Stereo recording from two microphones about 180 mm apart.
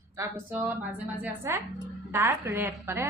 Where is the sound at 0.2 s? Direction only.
15° right (ahead or behind).